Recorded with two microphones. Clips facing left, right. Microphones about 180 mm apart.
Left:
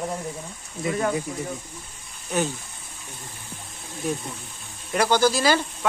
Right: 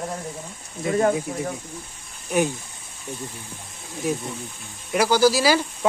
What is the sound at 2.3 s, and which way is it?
Speech, 10° right (ahead or behind).